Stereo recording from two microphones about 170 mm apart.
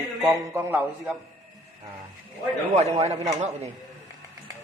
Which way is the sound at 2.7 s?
40° right (ahead or behind).